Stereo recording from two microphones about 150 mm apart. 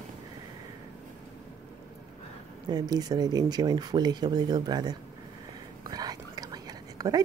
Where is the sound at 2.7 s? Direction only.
25° right (ahead or behind).